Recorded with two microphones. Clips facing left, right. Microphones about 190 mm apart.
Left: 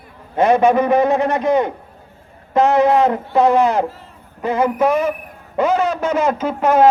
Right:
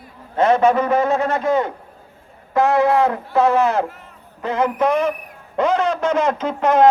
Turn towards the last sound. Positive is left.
turn(degrees=5)  # may be behind; listen again after turning